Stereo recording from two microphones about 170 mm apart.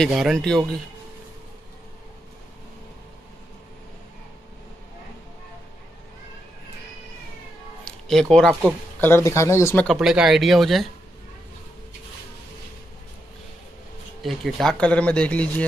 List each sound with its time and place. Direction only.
0.0 s speech: centre (ahead or behind)
7.8 s speech: 5° left (ahead or behind)
9.0 s speech: 15° left (ahead or behind)
9.8 s speech: centre (ahead or behind)
14.2 s speech: centre (ahead or behind)